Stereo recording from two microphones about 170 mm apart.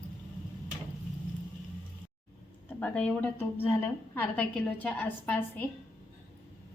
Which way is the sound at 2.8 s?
5° left (ahead or behind).